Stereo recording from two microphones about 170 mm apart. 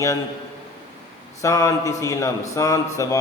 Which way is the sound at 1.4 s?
20° left (ahead or behind).